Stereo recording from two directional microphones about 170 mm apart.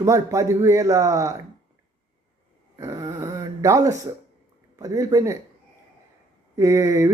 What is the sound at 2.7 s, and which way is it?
Speech, 20° right (ahead or behind).